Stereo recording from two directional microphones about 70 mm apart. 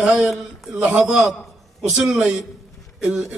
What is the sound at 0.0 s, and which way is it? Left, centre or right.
A man's voice, centre.